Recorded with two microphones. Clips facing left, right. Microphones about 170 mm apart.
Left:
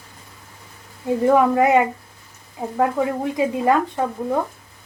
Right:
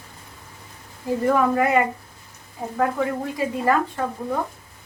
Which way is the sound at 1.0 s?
20° left (ahead or behind).